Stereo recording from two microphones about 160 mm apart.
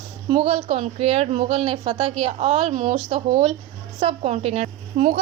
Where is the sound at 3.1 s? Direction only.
35° right (ahead or behind).